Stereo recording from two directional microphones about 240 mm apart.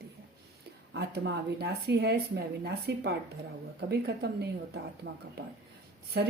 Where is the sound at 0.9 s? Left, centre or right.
Right.